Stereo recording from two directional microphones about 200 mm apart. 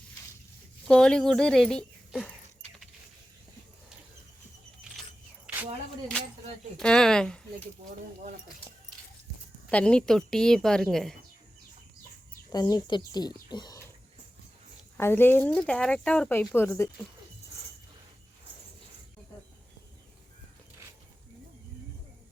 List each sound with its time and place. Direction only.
0.9 s a sound: 5° left (ahead or behind)
5.5 s a sound: 5° right (ahead or behind)
6.7 s a woman's voice: 5° left (ahead or behind)
9.6 s a woman's voice: 5° left (ahead or behind)
12.5 s speech: 20° left (ahead or behind)
14.9 s speech: 10° left (ahead or behind)